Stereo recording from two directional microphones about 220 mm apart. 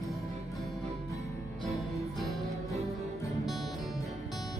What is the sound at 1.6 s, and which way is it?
Music, centre (ahead or behind).